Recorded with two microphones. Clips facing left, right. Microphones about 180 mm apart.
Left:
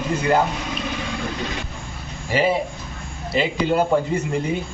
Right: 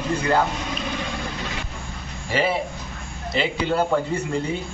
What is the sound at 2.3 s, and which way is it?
A man's voice, 15° left (ahead or behind).